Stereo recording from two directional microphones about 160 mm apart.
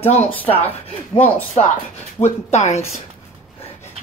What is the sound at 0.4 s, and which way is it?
Speech, 10° left (ahead or behind).